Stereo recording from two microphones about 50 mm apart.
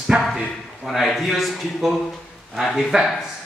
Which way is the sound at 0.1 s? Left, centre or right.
Right.